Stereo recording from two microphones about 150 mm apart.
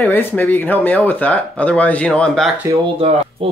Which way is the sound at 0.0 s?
15° left (ahead or behind).